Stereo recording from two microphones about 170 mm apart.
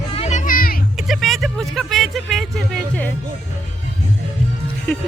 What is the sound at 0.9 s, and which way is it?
Vehicle, centre (ahead or behind).